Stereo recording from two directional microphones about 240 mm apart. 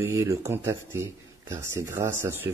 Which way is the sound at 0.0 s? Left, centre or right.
Centre.